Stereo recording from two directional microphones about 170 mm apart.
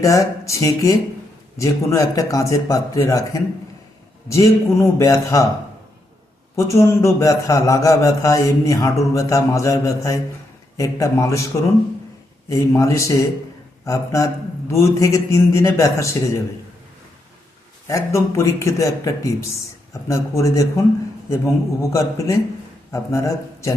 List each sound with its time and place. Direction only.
0.0 s a man's voice: 20° left (ahead or behind)
6.6 s a man's voice: 15° left (ahead or behind)
12.5 s a man's voice: 20° left (ahead or behind)
17.8 s a man's voice: 15° left (ahead or behind)